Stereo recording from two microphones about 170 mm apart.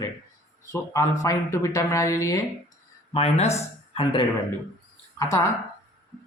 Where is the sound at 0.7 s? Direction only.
15° left (ahead or behind).